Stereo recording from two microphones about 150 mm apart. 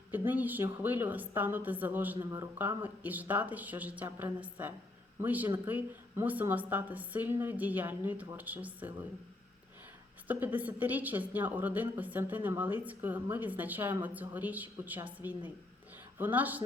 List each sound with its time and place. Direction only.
0.1 s a woman's voice: 10° right (ahead or behind)
2.1 s a man's voice: 30° right (ahead or behind)
2.6 s a woman's voice: 10° right (ahead or behind)
10.2 s a woman's voice: 10° right (ahead or behind)